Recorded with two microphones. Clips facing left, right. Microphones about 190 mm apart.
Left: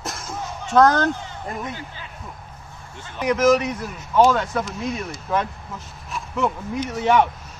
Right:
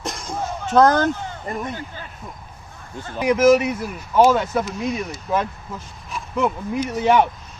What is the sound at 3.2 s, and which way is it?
Speech, 10° right (ahead or behind).